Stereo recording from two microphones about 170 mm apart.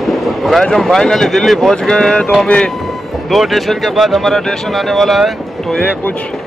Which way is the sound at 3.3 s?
Centre (ahead or behind).